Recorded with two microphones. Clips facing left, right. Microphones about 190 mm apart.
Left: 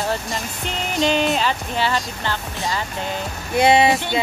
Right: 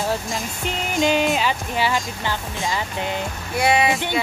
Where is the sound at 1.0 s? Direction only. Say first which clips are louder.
Even; 5° right (ahead or behind).